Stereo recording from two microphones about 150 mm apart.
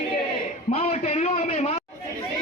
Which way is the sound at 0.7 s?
45° left (ahead or behind).